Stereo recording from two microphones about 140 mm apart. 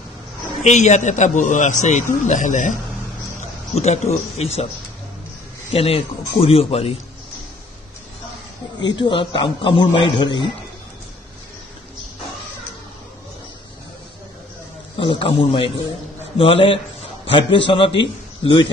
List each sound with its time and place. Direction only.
0.7 s a man's voice: 55° left (ahead or behind)
3.7 s speech: 50° left (ahead or behind)
5.7 s speech: 45° left (ahead or behind)
8.7 s a man's voice: 30° left (ahead or behind)
15.0 s a man's voice: 40° left (ahead or behind)